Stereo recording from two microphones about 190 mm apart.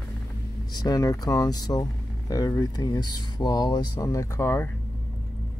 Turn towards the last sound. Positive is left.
turn(degrees=15)  # may be behind; listen again after turning